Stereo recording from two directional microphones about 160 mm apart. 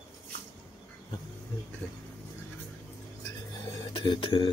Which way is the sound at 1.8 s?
10° left (ahead or behind).